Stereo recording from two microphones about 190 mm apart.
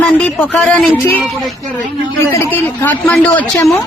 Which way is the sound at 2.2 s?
15° left (ahead or behind).